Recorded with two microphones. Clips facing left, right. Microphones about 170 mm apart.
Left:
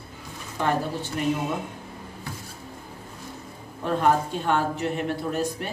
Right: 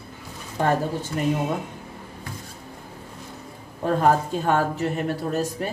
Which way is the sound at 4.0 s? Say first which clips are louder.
Right 2 dB; 40° right (ahead or behind).